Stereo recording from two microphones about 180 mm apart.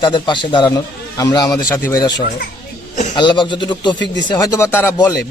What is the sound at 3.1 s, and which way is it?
Speech, 25° left (ahead or behind).